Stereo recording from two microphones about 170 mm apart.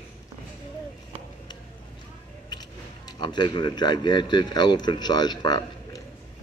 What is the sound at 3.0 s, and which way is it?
A man's voice, 25° left (ahead or behind).